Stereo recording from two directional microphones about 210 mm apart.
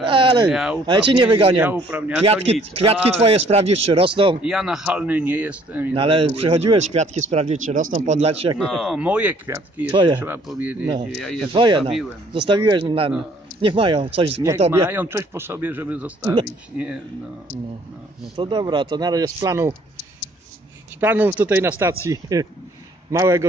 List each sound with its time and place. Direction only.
0.0 s a sound: 25° right (ahead or behind)
0.5 s speech: 5° right (ahead or behind)
0.8 s speech: 25° right (ahead or behind)
1.6 s speech: 10° right (ahead or behind)
2.2 s speech: 30° right (ahead or behind)
4.4 s speech: 5° right (ahead or behind)
5.9 s speech: 25° right (ahead or behind)
8.5 s speech: centre (ahead or behind); by 10.1 s 20° right (ahead or behind)
10.1 s speech: 10° right (ahead or behind)
11.5 s speech: 20° right (ahead or behind)
14.7 s speech: 10° right (ahead or behind)
18.3 s speech: 25° right (ahead or behind)
21.0 s speech: 10° right (ahead or behind)